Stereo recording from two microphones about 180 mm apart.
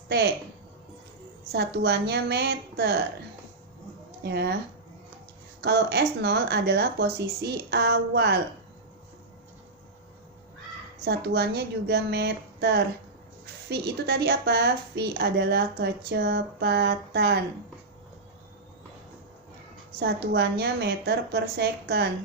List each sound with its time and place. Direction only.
1.5 s speech: 65° right (ahead or behind)
4.2 s speech: 65° right (ahead or behind)
5.6 s speech: 65° right (ahead or behind)
11.0 s a woman's voice: 65° right (ahead or behind)
20.0 s speech: 65° right (ahead or behind)